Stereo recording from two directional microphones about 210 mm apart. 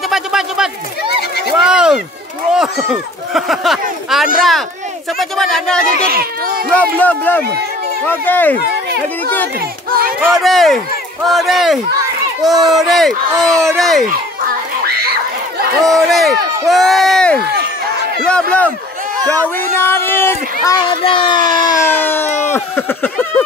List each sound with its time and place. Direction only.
0.1 s a sound: centre (ahead or behind)
2.5 s speech: centre (ahead or behind)
6.0 s speech: 45° right (ahead or behind)
6.7 s speech: 5° left (ahead or behind)
9.8 s speech: 45° right (ahead or behind)
10.4 s speech: centre (ahead or behind)
15.8 s speech: centre (ahead or behind)
19.7 s speech: 10° left (ahead or behind)
20.6 s a child's voice: 25° left (ahead or behind)
22.5 s a sound: 10° left (ahead or behind)